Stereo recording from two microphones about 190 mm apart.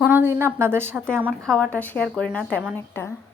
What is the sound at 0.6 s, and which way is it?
Speech, 10° right (ahead or behind).